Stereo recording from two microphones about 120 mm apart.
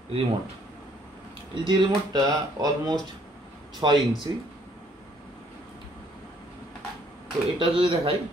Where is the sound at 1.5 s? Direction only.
40° right (ahead or behind).